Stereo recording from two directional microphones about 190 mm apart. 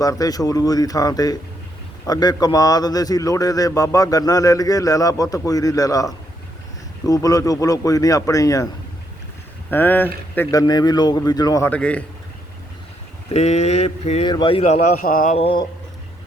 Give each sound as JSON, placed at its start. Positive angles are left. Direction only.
{"t": 0.0, "sound": "a man's voice", "side_deg": 20}
{"t": 9.6, "sound": "a man's voice", "side_deg": 10}
{"t": 11.7, "sound": "speech", "side_deg": 5}
{"t": 13.3, "sound": "mantra", "side_deg": 35}
{"t": 14.3, "sound": "a man's voice", "side_deg": 25}
{"t": 15.0, "sound": "mantra", "side_deg": 45}
{"t": 15.4, "sound": "a man's voice", "side_deg": 30}